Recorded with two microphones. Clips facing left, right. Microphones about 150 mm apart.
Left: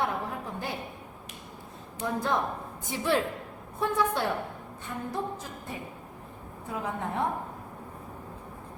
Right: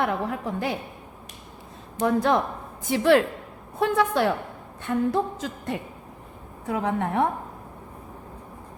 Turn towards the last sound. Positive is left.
turn(degrees=-75)  # may be behind; listen again after turning